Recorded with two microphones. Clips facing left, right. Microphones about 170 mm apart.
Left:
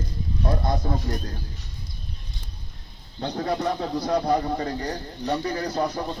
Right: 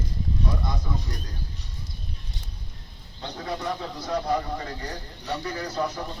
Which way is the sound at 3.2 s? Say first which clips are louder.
Left 6 dB; 45° left (ahead or behind).